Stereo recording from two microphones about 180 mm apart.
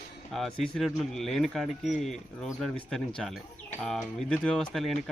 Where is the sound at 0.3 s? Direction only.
Centre (ahead or behind).